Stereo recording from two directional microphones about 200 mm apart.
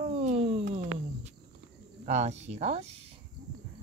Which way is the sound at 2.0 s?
35° right (ahead or behind).